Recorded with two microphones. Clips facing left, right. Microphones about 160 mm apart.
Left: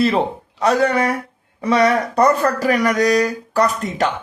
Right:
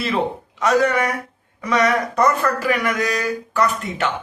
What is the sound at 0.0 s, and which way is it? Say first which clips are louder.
A man's voice: left 4 dB; 35° left (ahead or behind).